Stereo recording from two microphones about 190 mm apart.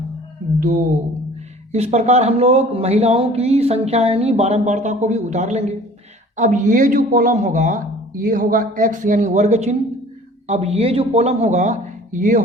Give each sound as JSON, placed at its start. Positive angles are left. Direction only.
{"t": 1.7, "sound": "speech", "side_deg": -35}